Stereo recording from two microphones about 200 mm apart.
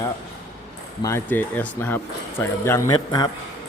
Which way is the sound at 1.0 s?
10° left (ahead or behind).